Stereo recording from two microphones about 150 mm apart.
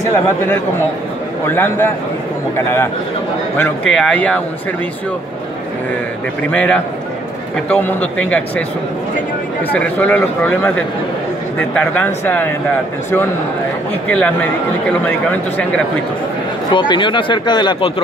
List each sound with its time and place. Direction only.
1.5 s speech: 15° left (ahead or behind)
3.9 s speech: 5° left (ahead or behind)
6.5 s speech: 10° left (ahead or behind)
9.7 s speech: 10° left (ahead or behind)
11.7 s speech: 10° left (ahead or behind)
14.1 s speech: 10° left (ahead or behind)
16.7 s speech: 30° left (ahead or behind)